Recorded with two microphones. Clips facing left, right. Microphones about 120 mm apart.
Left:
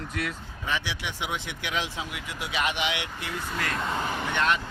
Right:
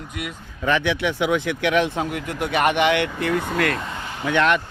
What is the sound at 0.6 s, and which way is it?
Speech, 60° right (ahead or behind).